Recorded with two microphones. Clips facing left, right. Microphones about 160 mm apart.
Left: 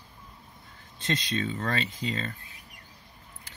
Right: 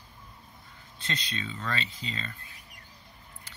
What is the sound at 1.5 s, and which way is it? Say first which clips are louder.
Speech: left 4 dB; 45° left (ahead or behind).